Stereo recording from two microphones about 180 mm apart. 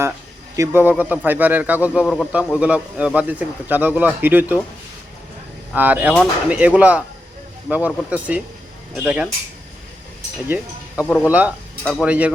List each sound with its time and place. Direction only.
0.5 s a man's voice: 15° right (ahead or behind)
5.7 s a man's voice: 10° right (ahead or behind)
11.0 s speech: 10° left (ahead or behind)
11.3 s a man's voice: 5° right (ahead or behind)